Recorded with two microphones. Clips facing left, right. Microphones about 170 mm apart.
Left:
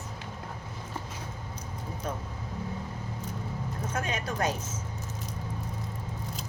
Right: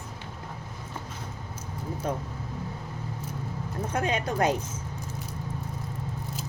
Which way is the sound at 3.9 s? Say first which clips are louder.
Right 6 dB; 30° right (ahead or behind).